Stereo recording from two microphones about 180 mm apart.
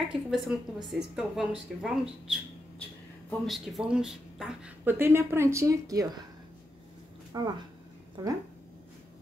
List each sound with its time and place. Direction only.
0.1 s a woman's voice: centre (ahead or behind); by 6.0 s 20° right (ahead or behind)
7.3 s speech: 20° right (ahead or behind)